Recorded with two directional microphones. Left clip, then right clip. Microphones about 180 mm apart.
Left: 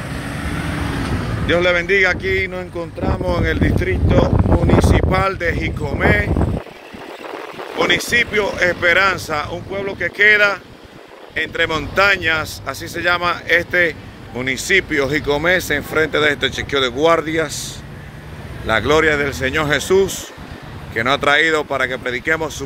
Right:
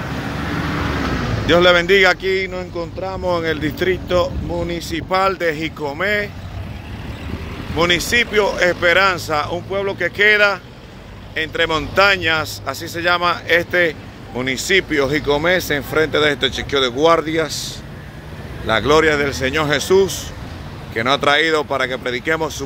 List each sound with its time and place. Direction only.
0.2 s vehicle: 40° left (ahead or behind)
1.5 s speech: 20° right (ahead or behind)
2.2 s speech: centre (ahead or behind)
3.7 s speech: 20° right (ahead or behind)
4.6 s speech: centre (ahead or behind)
7.7 s speech: 15° right (ahead or behind)
9.7 s speech: 25° right (ahead or behind)
10.1 s speech: 10° right (ahead or behind); by 17.5 s 5° left (ahead or behind)
18.7 s speech: 5° left (ahead or behind)